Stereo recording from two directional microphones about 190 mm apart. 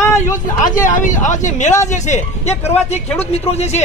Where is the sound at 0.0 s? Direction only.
15° left (ahead or behind).